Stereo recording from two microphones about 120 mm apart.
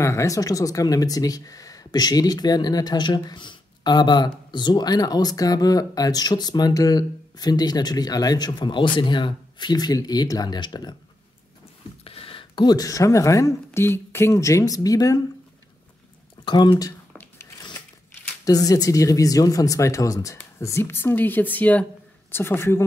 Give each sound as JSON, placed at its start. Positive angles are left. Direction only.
{"t": 0.0, "sound": "speech", "side_deg": 25}
{"t": 12.0, "sound": "speech", "side_deg": 55}
{"t": 16.4, "sound": "speech", "side_deg": 35}
{"t": 17.1, "sound": "a sound", "side_deg": 20}
{"t": 18.4, "sound": "speech", "side_deg": 30}